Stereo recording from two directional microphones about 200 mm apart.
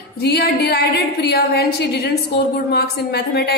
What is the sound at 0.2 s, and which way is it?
A woman's voice, 55° left (ahead or behind).